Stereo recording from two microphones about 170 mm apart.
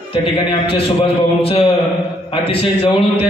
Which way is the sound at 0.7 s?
35° left (ahead or behind).